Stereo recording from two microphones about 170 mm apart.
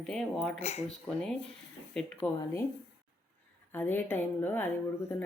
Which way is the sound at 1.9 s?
5° left (ahead or behind).